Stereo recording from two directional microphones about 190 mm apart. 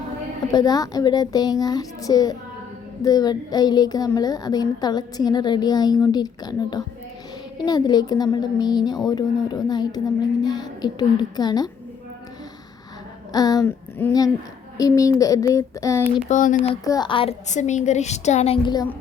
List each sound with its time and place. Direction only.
0.5 s a woman's voice: 20° left (ahead or behind)
13.3 s a woman's voice: 20° left (ahead or behind)
14.8 s a sound: 15° left (ahead or behind)
16.0 s speech: 35° left (ahead or behind)
16.8 s speech: 20° left (ahead or behind)